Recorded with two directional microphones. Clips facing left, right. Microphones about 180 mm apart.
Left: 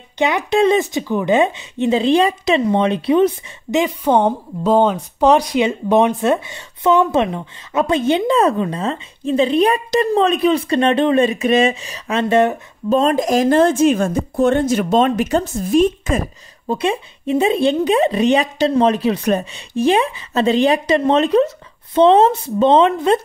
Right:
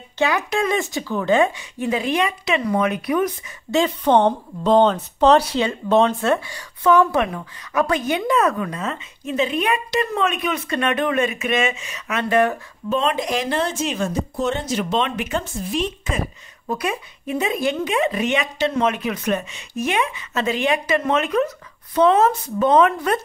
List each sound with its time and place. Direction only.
0.2 s speech: 20° left (ahead or behind)
3.7 s a woman's voice: 10° left (ahead or behind)
12.9 s speech: 45° left (ahead or behind)
16.6 s speech: 25° left (ahead or behind)